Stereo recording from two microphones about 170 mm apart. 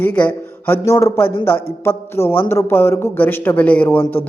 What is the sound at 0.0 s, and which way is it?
Speech, 10° left (ahead or behind).